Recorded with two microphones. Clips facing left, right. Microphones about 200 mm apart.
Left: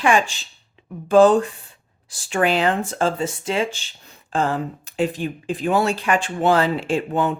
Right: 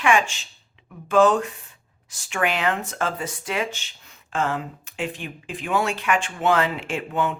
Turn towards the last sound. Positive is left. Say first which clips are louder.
# left 4 dB
turn(degrees=35)  # may be behind; listen again after turning